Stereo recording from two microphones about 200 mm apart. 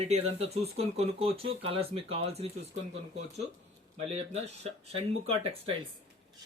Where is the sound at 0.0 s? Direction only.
30° right (ahead or behind).